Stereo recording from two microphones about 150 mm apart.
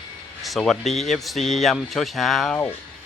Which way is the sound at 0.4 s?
Centre (ahead or behind).